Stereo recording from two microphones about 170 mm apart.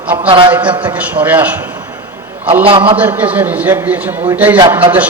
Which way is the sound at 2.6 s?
30° right (ahead or behind).